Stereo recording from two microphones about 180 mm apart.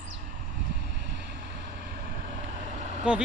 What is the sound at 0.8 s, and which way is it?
Boat, 70° right (ahead or behind).